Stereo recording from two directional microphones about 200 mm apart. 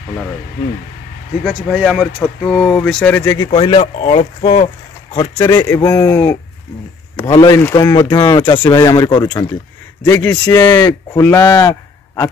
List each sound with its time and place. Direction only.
1.4 s speech: centre (ahead or behind); by 4.6 s 35° left (ahead or behind)
5.4 s speech: 15° left (ahead or behind)